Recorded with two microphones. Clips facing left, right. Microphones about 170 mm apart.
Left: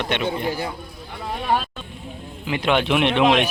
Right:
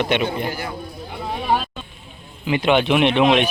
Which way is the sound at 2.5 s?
5° right (ahead or behind).